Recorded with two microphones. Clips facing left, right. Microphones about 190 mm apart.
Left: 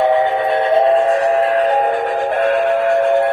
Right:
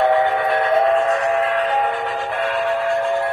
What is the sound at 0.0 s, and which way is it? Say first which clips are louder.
Train: left 2 dB; 20° left (ahead or behind).